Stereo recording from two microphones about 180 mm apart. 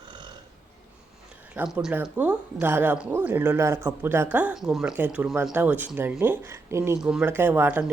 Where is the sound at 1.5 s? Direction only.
5° right (ahead or behind).